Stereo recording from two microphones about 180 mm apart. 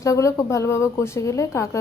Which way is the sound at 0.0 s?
15° left (ahead or behind).